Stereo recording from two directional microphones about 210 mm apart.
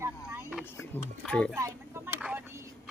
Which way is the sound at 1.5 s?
15° right (ahead or behind).